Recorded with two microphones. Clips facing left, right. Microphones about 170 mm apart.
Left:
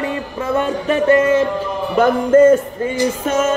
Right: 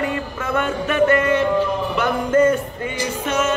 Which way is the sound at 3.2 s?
45° left (ahead or behind).